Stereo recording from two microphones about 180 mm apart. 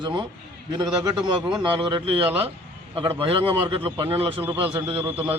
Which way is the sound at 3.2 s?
30° right (ahead or behind).